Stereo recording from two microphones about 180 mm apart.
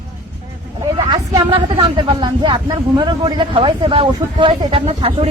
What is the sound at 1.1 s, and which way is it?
Speech, 25° right (ahead or behind).